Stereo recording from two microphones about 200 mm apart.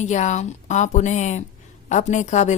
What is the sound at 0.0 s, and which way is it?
A woman's voice, 35° left (ahead or behind).